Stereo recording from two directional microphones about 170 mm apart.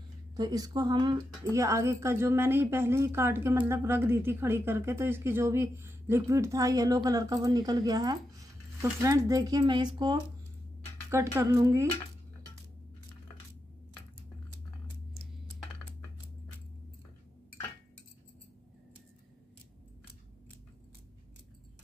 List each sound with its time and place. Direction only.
0.4 s speech: 25° right (ahead or behind)